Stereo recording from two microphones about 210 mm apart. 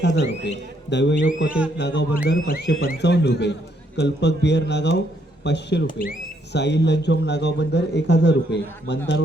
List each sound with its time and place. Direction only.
0.0 s speech: 55° left (ahead or behind)
1.5 s speech: 5° right (ahead or behind)
1.8 s a man's voice: 55° left (ahead or behind)